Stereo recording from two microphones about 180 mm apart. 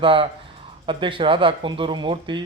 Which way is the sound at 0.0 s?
30° right (ahead or behind).